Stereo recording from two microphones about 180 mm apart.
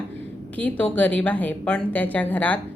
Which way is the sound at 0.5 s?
10° left (ahead or behind).